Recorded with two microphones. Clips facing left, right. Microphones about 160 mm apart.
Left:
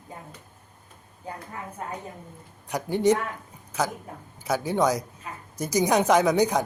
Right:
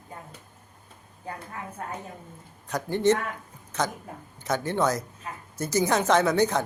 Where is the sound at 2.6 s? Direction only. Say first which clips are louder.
Left 1 dB; 10° left (ahead or behind).